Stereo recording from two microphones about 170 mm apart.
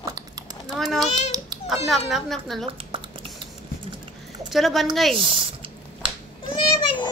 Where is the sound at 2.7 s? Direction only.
30° right (ahead or behind).